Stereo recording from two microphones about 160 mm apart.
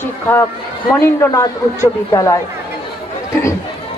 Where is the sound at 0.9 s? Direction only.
20° left (ahead or behind).